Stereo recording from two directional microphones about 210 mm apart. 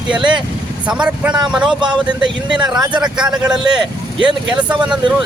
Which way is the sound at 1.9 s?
20° right (ahead or behind).